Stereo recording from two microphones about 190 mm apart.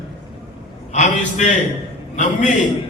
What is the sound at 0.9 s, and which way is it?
Speech, 40° left (ahead or behind).